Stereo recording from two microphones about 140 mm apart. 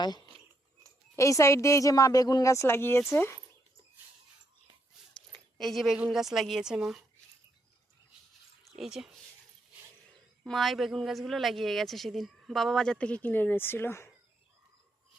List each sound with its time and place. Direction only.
0.0 s a woman's voice: 30° left (ahead or behind)
5.3 s speech: centre (ahead or behind)
8.6 s a sound: centre (ahead or behind)
10.4 s speech: centre (ahead or behind); by 14.1 s 15° left (ahead or behind)